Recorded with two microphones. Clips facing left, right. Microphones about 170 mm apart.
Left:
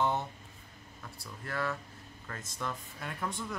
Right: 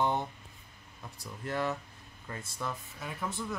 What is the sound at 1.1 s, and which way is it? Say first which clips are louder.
Speech: right 3 dB; 20° right (ahead or behind).